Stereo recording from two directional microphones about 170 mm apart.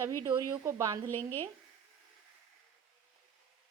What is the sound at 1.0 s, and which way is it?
Speech, 10° left (ahead or behind).